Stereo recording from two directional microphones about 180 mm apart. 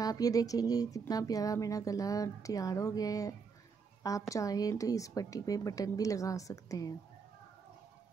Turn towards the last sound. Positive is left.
turn(degrees=20)  # may be behind; listen again after turning